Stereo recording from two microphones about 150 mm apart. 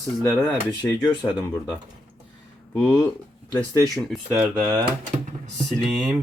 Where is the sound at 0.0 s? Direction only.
5° right (ahead or behind).